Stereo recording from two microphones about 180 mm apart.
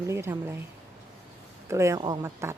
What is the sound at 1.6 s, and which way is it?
Speech, 15° right (ahead or behind).